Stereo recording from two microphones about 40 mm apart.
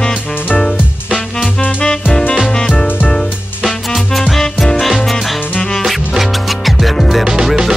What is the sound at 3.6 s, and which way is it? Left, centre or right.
Music, centre.